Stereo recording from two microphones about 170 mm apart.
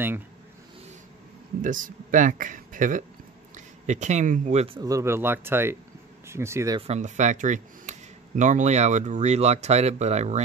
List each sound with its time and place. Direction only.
1.6 s speech: 50° right (ahead or behind)
4.7 s speech: 20° right (ahead or behind)
6.9 s speech: 45° right (ahead or behind)